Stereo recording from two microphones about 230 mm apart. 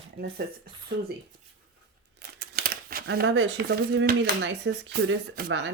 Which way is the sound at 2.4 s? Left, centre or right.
Right.